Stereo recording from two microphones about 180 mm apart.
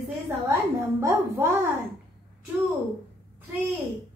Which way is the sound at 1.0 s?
15° right (ahead or behind).